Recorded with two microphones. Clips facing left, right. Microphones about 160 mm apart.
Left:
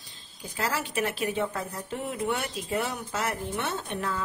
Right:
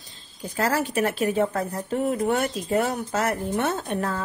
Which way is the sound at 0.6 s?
45° right (ahead or behind).